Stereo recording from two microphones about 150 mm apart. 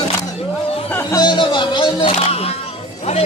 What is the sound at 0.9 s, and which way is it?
Music, 25° left (ahead or behind).